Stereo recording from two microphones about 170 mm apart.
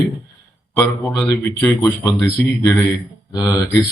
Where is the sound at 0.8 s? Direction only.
20° left (ahead or behind).